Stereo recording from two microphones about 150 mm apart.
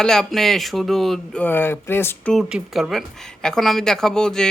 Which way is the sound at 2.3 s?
Centre (ahead or behind).